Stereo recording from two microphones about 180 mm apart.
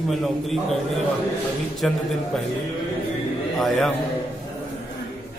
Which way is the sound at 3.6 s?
Centre (ahead or behind).